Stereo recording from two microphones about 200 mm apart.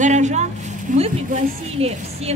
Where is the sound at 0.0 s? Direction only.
35° right (ahead or behind).